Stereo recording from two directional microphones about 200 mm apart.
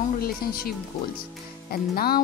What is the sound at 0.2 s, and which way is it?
Speech, 50° left (ahead or behind).